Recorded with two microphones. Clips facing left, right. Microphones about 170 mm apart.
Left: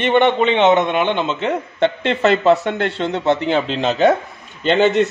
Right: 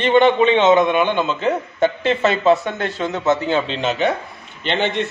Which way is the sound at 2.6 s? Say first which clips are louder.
Left 3 dB; 30° left (ahead or behind).